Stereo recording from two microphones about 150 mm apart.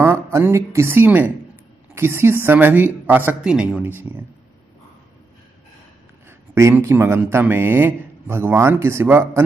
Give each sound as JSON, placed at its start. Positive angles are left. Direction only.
{"t": 0.0, "sound": "a man's voice", "side_deg": -15}
{"t": 6.5, "sound": "a man's voice", "side_deg": -20}